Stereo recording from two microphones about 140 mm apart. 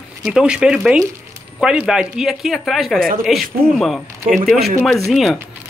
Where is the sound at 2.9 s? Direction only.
90° right.